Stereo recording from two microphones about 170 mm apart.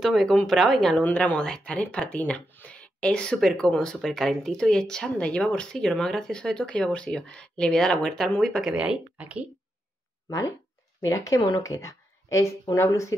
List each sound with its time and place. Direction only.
0.0 s speech: centre (ahead or behind)
11.0 s speech: 20° left (ahead or behind)